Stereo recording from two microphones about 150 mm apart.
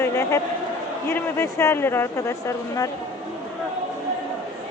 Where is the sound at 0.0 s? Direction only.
15° left (ahead or behind).